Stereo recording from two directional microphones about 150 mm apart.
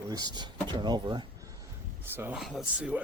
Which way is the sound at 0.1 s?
30° right (ahead or behind).